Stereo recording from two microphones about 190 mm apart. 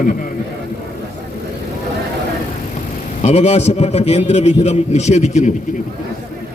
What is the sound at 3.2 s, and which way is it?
A man's voice, 35° left (ahead or behind).